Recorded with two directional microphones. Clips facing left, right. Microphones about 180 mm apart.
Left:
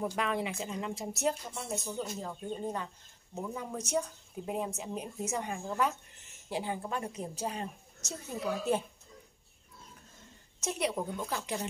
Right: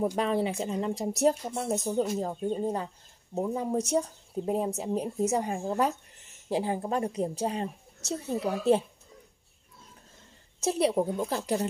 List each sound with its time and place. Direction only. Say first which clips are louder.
0.0 s speech: right 6 dB; 30° right (ahead or behind)
10.6 s speech: right 8 dB; 30° right (ahead or behind)